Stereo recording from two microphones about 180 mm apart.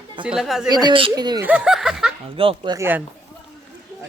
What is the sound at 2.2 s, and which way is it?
Speech, 30° right (ahead or behind).